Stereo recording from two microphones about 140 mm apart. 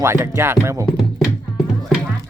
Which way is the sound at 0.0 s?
20° right (ahead or behind).